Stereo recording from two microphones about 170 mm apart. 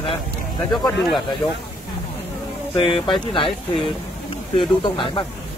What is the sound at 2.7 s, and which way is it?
Speech, 30° left (ahead or behind).